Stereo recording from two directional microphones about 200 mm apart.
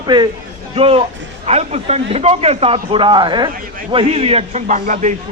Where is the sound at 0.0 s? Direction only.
20° right (ahead or behind).